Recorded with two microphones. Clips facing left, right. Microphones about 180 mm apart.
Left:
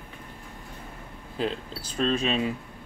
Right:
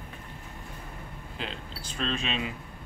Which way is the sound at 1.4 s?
40° left (ahead or behind).